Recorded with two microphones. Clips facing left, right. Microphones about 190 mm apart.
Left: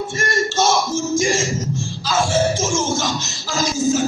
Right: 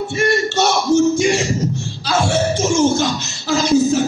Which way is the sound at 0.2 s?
65° right (ahead or behind).